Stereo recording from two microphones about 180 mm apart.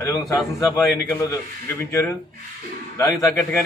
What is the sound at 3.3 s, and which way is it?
Speech, centre (ahead or behind).